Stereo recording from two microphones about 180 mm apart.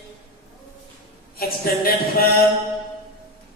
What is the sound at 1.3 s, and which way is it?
Mantra, 55° left (ahead or behind).